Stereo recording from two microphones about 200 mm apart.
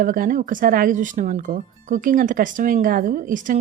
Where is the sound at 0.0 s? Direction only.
45° right (ahead or behind).